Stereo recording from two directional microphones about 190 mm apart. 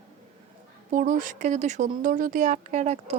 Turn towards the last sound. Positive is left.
turn(degrees=-35)  # may be behind; listen again after turning